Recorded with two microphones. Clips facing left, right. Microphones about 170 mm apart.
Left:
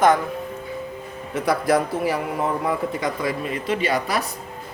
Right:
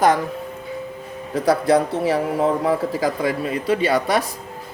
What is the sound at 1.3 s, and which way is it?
A woman's voice, 30° right (ahead or behind).